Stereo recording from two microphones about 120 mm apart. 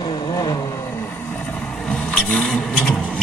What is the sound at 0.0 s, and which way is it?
Vehicle, 45° left (ahead or behind).